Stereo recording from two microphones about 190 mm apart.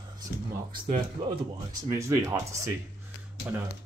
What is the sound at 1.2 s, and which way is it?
Speech, 25° right (ahead or behind).